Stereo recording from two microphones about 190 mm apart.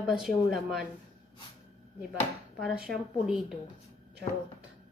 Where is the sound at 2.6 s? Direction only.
Centre (ahead or behind).